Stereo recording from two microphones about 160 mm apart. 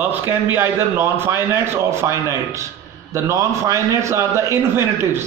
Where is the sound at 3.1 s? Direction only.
20° right (ahead or behind).